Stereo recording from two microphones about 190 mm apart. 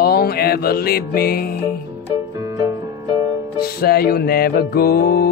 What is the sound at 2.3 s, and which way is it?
Music, 20° right (ahead or behind).